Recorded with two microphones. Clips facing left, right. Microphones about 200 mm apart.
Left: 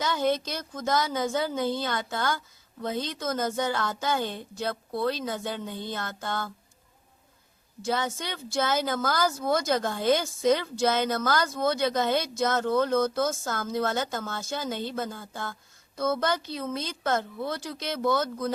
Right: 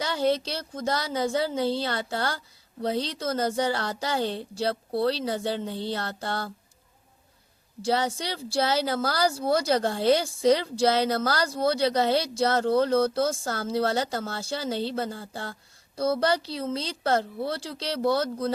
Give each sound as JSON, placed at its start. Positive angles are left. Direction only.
{"t": 0.0, "sound": "a woman's voice", "side_deg": -30}
{"t": 7.8, "sound": "a woman's voice", "side_deg": -35}